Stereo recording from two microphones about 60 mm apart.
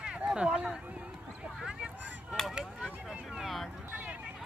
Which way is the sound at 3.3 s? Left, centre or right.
Centre.